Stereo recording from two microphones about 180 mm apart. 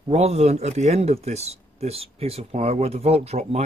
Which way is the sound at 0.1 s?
35° right (ahead or behind).